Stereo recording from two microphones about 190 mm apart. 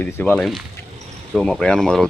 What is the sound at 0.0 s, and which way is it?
Speech, 5° left (ahead or behind).